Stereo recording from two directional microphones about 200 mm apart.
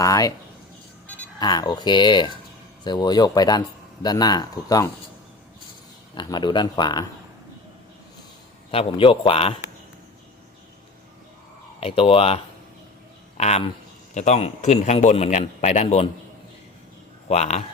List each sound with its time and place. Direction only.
0.0 s speech: 15° left (ahead or behind)
1.4 s speech: 20° left (ahead or behind)
6.1 s speech: 20° left (ahead or behind)
8.7 s speech: 25° left (ahead or behind)
11.8 s a man's voice: 30° left (ahead or behind)
17.2 s a man's voice: 35° left (ahead or behind)